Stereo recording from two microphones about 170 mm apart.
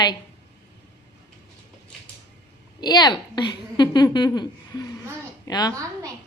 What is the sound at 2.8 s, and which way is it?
A woman's voice, 25° left (ahead or behind).